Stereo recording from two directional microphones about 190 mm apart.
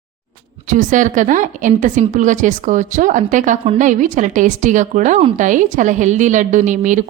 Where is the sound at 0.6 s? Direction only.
40° right (ahead or behind).